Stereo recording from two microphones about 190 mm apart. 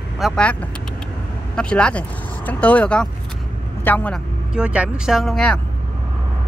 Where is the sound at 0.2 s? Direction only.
5° left (ahead or behind).